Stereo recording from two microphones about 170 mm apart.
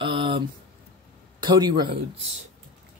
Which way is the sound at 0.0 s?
30° right (ahead or behind).